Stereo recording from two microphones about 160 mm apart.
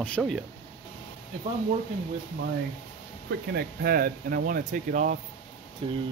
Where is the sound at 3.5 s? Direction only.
75° right (ahead or behind); by 5.1 s 50° right (ahead or behind).